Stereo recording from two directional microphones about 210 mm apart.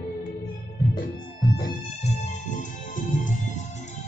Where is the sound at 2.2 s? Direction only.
35° left (ahead or behind).